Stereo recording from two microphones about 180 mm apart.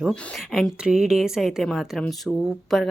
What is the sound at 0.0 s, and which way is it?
A woman's voice, centre (ahead or behind).